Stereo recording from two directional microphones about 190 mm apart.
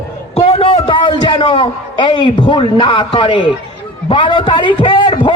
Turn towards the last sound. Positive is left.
turn(degrees=25)  # may be behind; listen again after turning